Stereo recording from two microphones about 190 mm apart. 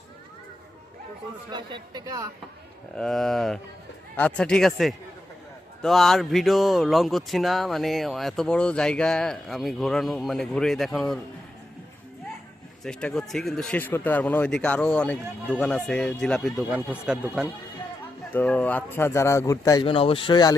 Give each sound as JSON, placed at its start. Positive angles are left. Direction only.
{"t": 1.5, "sound": "speech", "side_deg": -25}
{"t": 2.9, "sound": "speech", "side_deg": 0}
{"t": 12.8, "sound": "speech", "side_deg": 5}
{"t": 18.3, "sound": "speech", "side_deg": 10}
{"t": 19.8, "sound": "speech", "side_deg": 30}